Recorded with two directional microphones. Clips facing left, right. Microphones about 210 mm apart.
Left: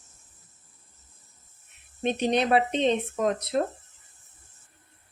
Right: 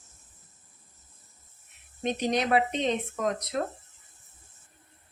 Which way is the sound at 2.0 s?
30° left (ahead or behind).